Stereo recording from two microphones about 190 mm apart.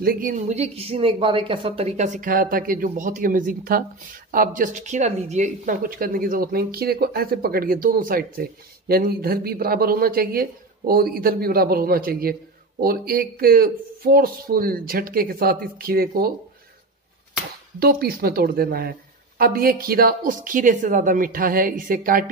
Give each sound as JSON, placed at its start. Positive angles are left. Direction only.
{"t": 0.0, "sound": "a woman's voice", "side_deg": -50}
{"t": 17.7, "sound": "a woman's voice", "side_deg": -50}